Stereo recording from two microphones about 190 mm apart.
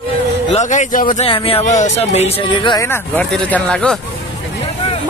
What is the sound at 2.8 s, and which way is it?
Speech, 10° left (ahead or behind).